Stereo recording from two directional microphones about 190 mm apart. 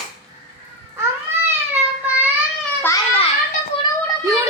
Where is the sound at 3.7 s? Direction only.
30° left (ahead or behind).